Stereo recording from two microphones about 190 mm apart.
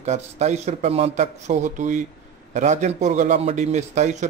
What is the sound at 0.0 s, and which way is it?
A man's voice, 35° right (ahead or behind).